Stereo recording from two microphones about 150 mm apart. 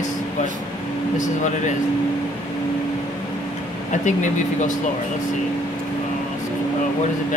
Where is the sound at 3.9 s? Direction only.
55° left (ahead or behind).